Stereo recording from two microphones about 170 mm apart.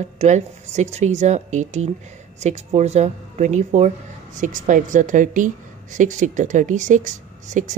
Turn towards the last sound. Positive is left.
turn(degrees=-45)  # may be behind; listen again after turning